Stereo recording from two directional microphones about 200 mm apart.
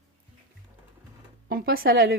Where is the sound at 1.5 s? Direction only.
50° right (ahead or behind).